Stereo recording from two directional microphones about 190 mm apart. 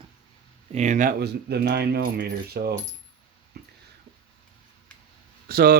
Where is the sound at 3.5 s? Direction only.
55° right (ahead or behind).